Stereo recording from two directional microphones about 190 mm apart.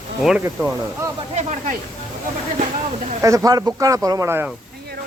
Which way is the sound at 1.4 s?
40° right (ahead or behind).